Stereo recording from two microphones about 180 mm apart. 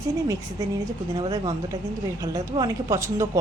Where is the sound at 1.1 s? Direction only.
25° right (ahead or behind).